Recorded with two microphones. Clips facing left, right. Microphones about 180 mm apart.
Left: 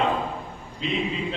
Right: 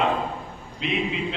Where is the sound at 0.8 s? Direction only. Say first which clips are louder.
Right 1 dB; 65° right (ahead or behind).